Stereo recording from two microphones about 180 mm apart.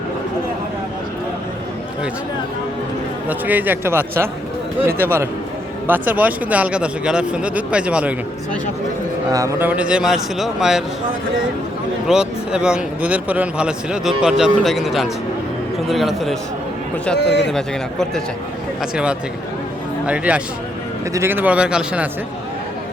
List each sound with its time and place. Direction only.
3.2 s speech: 10° right (ahead or behind)
9.3 s a man's voice: 15° right (ahead or behind); by 10.8 s centre (ahead or behind)
12.0 s a man's voice: 5° right (ahead or behind)
17.2 s speech: 70° left (ahead or behind)
18.8 s a man's voice: 5° right (ahead or behind)